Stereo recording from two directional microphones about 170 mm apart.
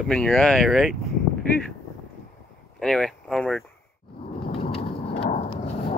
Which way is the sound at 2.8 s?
5° left (ahead or behind).